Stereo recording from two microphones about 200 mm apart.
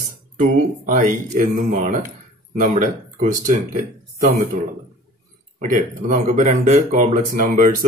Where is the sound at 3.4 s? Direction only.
40° right (ahead or behind).